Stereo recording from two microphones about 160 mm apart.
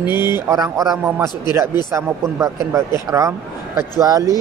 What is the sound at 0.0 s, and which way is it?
A man's voice, 15° right (ahead or behind).